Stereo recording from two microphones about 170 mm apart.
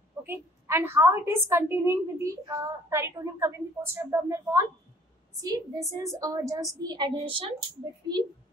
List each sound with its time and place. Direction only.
0.2 s a woman's voice: 15° right (ahead or behind); by 7.5 s 30° right (ahead or behind)